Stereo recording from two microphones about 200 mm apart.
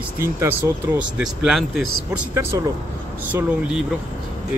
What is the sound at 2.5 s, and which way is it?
Speech, 15° right (ahead or behind).